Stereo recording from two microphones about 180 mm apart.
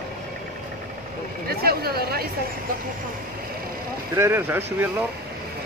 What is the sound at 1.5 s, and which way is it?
Speech, 60° right (ahead or behind).